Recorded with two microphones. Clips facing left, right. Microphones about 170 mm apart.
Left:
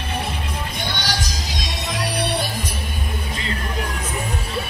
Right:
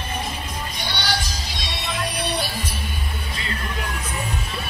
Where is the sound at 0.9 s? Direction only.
45° left (ahead or behind).